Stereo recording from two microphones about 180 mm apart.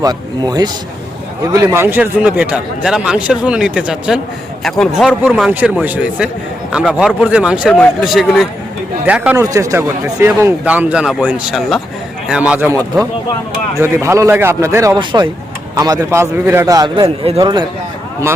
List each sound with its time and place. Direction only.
0.0 s a man's voice: 20° right (ahead or behind)